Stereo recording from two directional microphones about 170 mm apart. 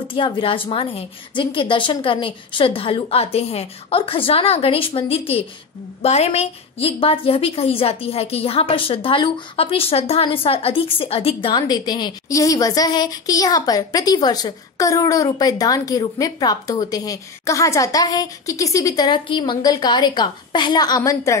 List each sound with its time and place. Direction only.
0.1 s a woman's voice: 30° left (ahead or behind)